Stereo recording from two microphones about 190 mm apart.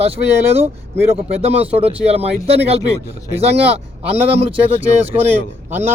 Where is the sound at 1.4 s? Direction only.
30° right (ahead or behind).